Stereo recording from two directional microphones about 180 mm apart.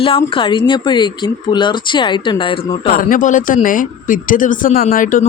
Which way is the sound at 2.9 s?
50° left (ahead or behind).